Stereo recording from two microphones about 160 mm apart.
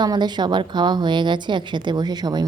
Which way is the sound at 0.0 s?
25° right (ahead or behind).